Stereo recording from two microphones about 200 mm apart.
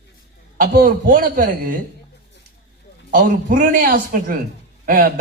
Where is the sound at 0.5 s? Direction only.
45° right (ahead or behind).